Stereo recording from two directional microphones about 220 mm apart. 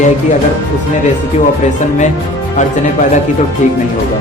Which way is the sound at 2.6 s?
35° left (ahead or behind).